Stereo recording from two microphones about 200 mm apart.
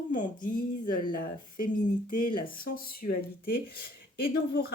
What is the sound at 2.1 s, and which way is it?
Speech, 45° left (ahead or behind).